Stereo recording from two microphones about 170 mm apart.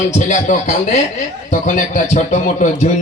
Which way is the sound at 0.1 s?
45° left (ahead or behind).